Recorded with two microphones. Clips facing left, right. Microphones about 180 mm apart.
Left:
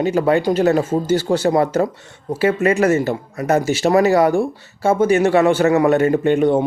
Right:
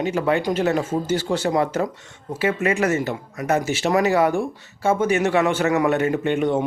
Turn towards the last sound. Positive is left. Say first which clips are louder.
# left 6 dB
turn(degrees=35)  # may be behind; listen again after turning